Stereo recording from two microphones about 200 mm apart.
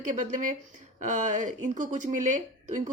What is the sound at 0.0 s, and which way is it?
Speech, 40° right (ahead or behind).